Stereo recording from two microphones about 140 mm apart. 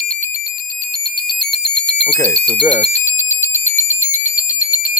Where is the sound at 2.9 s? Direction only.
50° left (ahead or behind).